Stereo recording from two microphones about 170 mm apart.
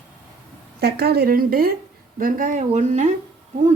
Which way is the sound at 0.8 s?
65° right (ahead or behind).